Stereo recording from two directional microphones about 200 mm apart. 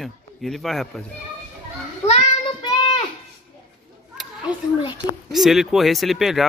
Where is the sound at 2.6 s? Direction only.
20° left (ahead or behind).